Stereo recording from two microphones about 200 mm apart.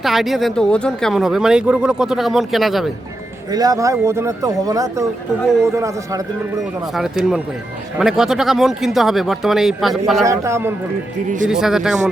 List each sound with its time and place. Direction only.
0.0 s speech: centre (ahead or behind)
3.5 s speech: 15° right (ahead or behind)
6.6 s speech: centre (ahead or behind)
10.2 s speech: 15° right (ahead or behind)